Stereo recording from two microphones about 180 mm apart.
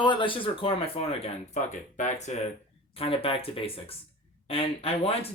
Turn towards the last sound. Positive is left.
turn(degrees=30)  # may be behind; listen again after turning